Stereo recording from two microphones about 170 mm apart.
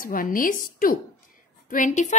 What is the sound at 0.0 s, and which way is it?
A woman's voice, 55° left (ahead or behind).